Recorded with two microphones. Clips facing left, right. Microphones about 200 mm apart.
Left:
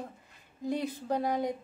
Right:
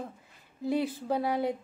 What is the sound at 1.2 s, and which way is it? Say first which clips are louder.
Speech: right 1 dB; 5° right (ahead or behind).